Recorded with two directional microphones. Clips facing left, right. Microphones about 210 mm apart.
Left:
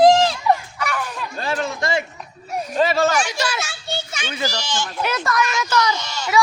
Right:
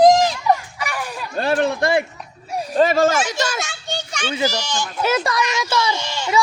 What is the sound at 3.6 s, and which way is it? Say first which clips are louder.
Children playing: right 1 dB; 5° left (ahead or behind).